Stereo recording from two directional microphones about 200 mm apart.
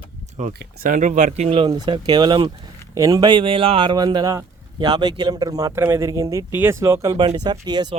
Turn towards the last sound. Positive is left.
turn(degrees=-20)  # may be behind; listen again after turning